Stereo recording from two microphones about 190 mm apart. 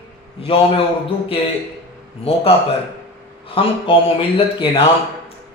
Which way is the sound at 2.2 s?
30° left (ahead or behind).